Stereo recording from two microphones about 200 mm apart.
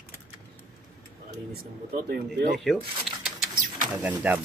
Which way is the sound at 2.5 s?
Centre (ahead or behind).